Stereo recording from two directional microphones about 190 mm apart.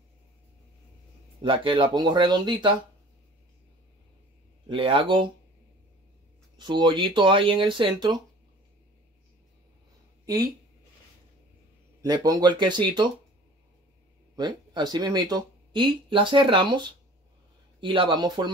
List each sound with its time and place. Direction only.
1.4 s speech: 25° right (ahead or behind)
4.6 s speech: 25° right (ahead or behind)
6.6 s speech: 25° right (ahead or behind)
12.0 s speech: 20° right (ahead or behind)
14.3 s speech: 20° right (ahead or behind)